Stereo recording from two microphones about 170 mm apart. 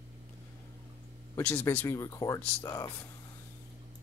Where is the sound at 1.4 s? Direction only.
15° left (ahead or behind).